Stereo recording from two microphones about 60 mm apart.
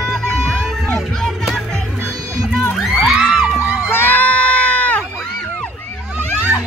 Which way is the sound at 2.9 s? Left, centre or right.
Centre.